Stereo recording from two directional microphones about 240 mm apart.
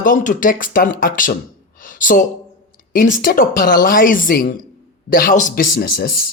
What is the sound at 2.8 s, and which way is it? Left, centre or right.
Speech, left.